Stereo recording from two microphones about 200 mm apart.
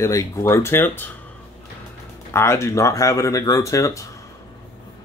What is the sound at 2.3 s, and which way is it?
Speech, 15° left (ahead or behind).